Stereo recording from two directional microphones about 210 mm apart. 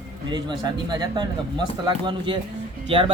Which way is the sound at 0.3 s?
20° right (ahead or behind).